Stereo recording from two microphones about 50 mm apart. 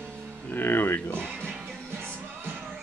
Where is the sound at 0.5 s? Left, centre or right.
Left.